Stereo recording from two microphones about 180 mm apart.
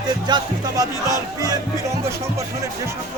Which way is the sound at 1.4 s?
20° right (ahead or behind).